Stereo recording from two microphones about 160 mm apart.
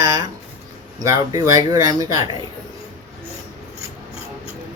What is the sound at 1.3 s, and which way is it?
Speech, 20° right (ahead or behind).